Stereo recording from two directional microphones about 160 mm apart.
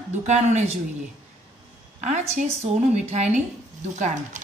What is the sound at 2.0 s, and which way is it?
Speech, 50° right (ahead or behind).